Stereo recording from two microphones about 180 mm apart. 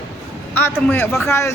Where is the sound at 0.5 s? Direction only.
10° left (ahead or behind).